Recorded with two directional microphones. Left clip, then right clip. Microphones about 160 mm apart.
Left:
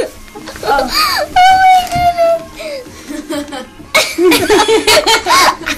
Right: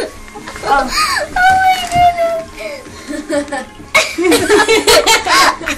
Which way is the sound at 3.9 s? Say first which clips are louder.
Left 1 dB; 30° left (ahead or behind).